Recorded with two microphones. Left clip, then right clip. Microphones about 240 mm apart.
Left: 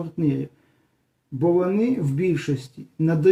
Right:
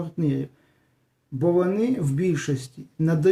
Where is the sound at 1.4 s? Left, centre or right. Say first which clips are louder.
Left 1 dB; centre.